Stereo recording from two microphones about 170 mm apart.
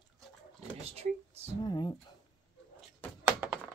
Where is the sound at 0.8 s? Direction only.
35° right (ahead or behind).